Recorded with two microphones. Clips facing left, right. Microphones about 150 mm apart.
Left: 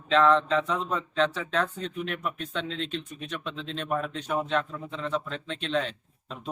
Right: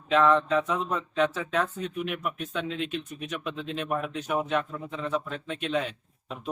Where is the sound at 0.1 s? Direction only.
5° right (ahead or behind).